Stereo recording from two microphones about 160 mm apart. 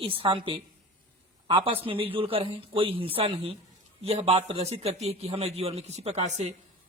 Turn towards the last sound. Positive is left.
turn(degrees=-45)  # may be behind; listen again after turning